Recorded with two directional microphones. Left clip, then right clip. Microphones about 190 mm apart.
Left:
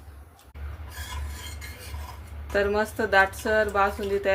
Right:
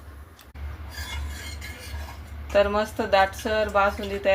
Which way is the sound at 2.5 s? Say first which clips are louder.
Right 3 dB; 25° left (ahead or behind).